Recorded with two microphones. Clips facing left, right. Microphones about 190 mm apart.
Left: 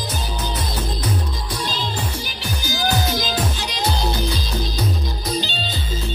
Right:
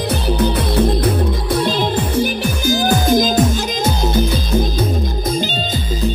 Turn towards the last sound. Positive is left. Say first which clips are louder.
# right 5 dB
turn(degrees=-50)  # may be behind; listen again after turning